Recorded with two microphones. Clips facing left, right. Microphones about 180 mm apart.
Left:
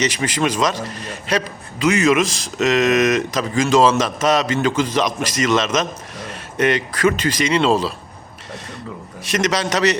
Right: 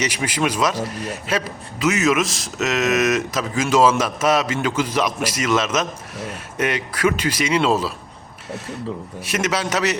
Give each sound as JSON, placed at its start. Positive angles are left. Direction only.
{"t": 0.0, "sound": "a man's voice", "side_deg": -10}
{"t": 9.2, "sound": "a man's voice", "side_deg": -10}